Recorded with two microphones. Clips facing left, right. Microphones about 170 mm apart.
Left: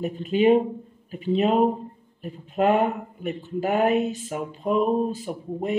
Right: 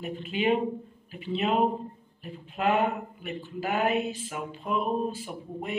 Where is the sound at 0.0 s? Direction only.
40° left (ahead or behind).